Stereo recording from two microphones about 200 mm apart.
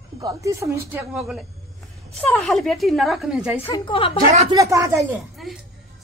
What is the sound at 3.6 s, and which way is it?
Speech, 25° left (ahead or behind).